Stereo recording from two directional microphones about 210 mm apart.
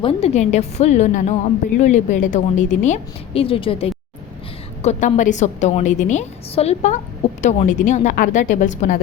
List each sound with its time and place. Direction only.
0.0 s a woman's voice: 30° left (ahead or behind)